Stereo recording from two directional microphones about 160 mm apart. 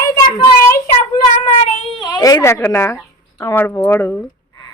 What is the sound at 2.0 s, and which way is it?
A woman's voice, 25° left (ahead or behind).